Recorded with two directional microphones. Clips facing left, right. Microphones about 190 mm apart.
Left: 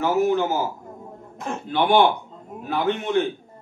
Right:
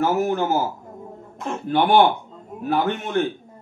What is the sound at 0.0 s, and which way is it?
Speech, 45° right (ahead or behind).